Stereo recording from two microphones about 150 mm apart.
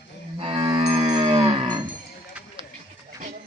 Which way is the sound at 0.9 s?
45° right (ahead or behind).